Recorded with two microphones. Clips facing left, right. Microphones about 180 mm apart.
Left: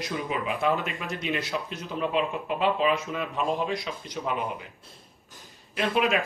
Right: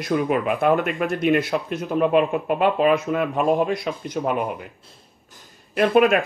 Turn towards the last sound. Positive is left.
turn(degrees=-55)  # may be behind; listen again after turning